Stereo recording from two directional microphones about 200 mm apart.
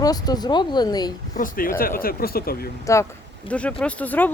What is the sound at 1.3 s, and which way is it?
Speech, 45° left (ahead or behind).